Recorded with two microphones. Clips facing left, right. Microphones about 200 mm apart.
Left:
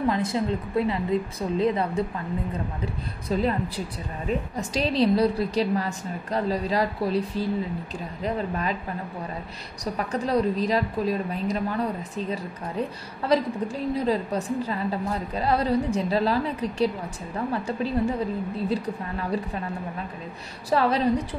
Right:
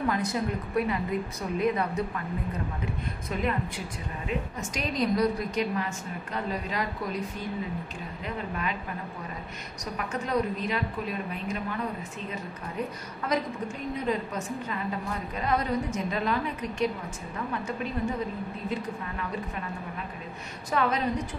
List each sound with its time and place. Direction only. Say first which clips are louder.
0.1 s a woman's voice: left 4 dB; 25° left (ahead or behind)
9.9 s a woman's voice: left 4 dB; 35° left (ahead or behind)
20.7 s a woman's voice: left 5 dB; 35° left (ahead or behind)